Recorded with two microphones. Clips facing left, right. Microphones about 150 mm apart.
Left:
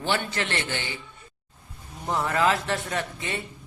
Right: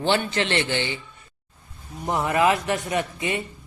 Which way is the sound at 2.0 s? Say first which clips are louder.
Right 3 dB; 15° right (ahead or behind).